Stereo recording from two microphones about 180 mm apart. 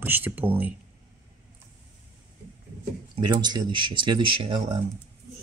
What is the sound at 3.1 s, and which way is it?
Speech, 25° right (ahead or behind).